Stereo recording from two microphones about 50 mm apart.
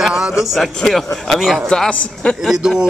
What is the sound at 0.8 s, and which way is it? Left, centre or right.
A man's voice, centre.